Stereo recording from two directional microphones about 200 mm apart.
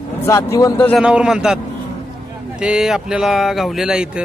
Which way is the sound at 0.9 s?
5° right (ahead or behind).